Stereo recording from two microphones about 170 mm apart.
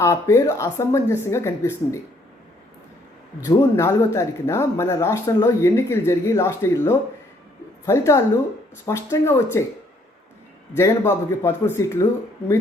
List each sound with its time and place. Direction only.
0.0 s speech: 15° left (ahead or behind)
3.4 s speech: 15° left (ahead or behind)
10.8 s speech: 15° left (ahead or behind)